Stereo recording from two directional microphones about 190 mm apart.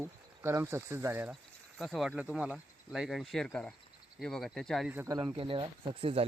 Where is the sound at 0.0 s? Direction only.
15° right (ahead or behind).